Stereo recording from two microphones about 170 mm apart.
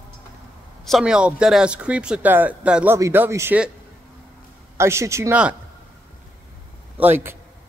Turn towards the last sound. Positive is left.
turn(degrees=-15)  # may be behind; listen again after turning